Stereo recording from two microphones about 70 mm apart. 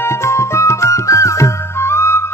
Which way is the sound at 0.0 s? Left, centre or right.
Left.